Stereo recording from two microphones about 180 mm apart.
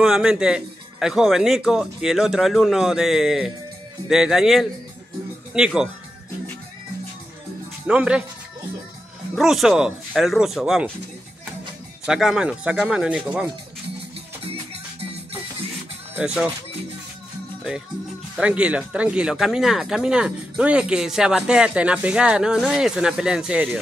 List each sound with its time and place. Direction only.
0.0 s speech: 5° right (ahead or behind)
7.8 s speech: 5° right (ahead or behind)
9.3 s speech: centre (ahead or behind)
12.1 s speech: 5° right (ahead or behind)
14.4 s music: 35° right (ahead or behind)
16.2 s speech: 10° right (ahead or behind)
18.4 s speech: 5° right (ahead or behind)